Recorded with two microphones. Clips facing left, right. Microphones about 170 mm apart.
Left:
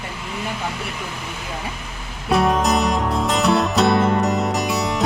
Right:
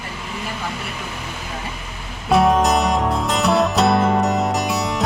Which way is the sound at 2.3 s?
Centre (ahead or behind).